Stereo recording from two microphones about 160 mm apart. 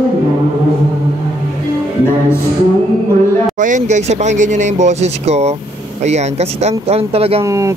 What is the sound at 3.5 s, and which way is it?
Speech, 50° right (ahead or behind).